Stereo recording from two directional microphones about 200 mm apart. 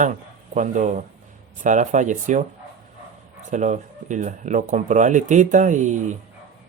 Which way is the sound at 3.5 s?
35° right (ahead or behind).